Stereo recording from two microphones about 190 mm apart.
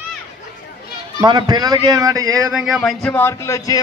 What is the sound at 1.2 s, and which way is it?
Speech, 25° right (ahead or behind).